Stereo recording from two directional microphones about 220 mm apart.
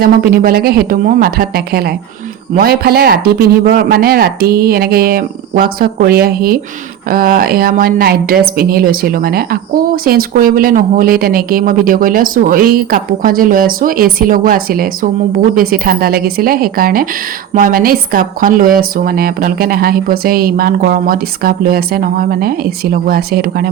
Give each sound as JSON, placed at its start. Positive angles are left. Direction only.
{"t": 0.0, "sound": "speech", "side_deg": -40}